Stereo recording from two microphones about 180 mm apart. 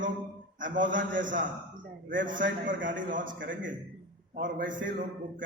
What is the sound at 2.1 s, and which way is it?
Speech, 90° right.